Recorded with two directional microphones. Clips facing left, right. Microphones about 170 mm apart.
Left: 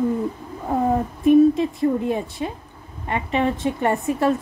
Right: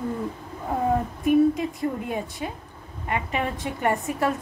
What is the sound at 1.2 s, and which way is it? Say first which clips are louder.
A woman's voice: left 6 dB; 25° left (ahead or behind).